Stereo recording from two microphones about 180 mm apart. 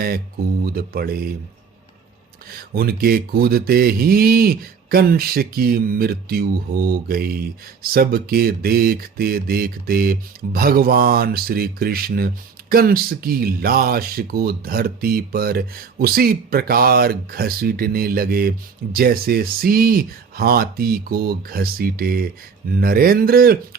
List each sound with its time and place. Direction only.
0.6 s speech: 55° right (ahead or behind)
2.6 s speech: 55° right (ahead or behind)